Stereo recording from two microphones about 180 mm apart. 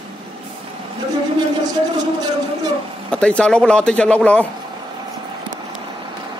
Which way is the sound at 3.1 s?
5° left (ahead or behind).